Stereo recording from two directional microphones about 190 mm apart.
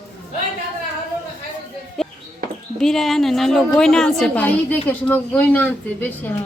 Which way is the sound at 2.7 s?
Centre (ahead or behind).